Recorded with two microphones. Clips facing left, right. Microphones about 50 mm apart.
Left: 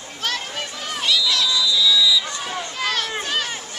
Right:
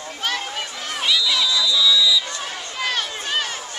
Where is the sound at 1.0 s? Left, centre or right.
Centre.